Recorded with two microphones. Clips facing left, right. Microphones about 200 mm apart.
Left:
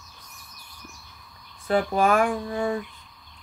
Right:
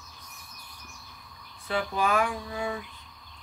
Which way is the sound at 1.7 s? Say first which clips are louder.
Left 6 dB; 50° left (ahead or behind).